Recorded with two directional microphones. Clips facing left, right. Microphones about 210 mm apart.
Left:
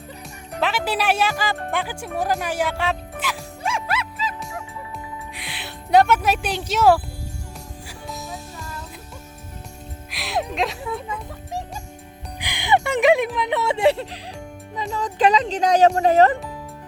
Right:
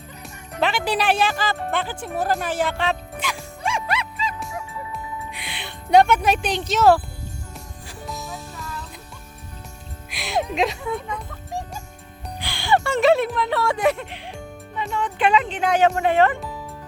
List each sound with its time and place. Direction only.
0.6 s speech: 5° left (ahead or behind)
2.4 s music: 10° left (ahead or behind)
10.1 s a child's voice: centre (ahead or behind)
12.4 s speech: 15° left (ahead or behind); by 16.4 s 40° left (ahead or behind)